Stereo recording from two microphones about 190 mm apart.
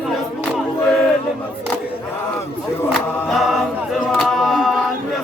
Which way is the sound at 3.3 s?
Centre (ahead or behind).